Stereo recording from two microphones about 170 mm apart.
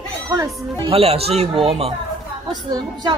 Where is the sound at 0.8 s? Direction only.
35° right (ahead or behind).